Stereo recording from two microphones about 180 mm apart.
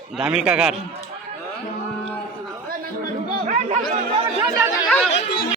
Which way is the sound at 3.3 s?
50° right (ahead or behind).